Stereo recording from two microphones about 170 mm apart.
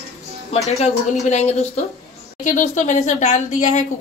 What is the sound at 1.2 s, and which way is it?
A woman's voice, 40° left (ahead or behind).